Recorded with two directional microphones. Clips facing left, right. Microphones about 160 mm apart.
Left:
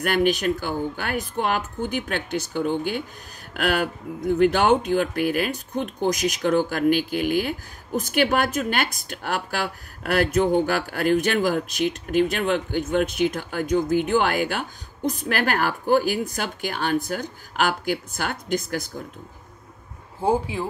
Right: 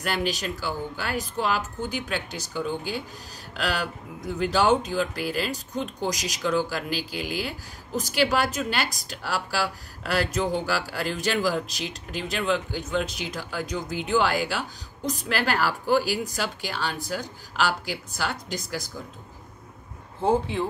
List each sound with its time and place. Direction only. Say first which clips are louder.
0.0 s a woman's voice: left 7 dB; 55° left (ahead or behind)
20.2 s speech: left 1 dB; 10° left (ahead or behind)